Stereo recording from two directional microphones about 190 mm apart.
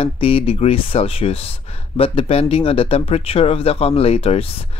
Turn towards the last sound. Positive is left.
turn(degrees=30)  # may be behind; listen again after turning